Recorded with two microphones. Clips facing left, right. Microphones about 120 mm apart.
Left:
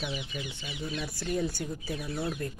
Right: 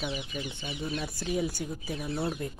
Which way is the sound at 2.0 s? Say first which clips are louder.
Right 3 dB; 25° right (ahead or behind).